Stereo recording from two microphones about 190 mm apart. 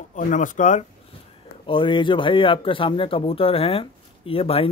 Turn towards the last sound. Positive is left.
turn(degrees=30)  # may be behind; listen again after turning